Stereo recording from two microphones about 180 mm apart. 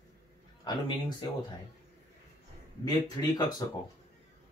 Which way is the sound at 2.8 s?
20° left (ahead or behind).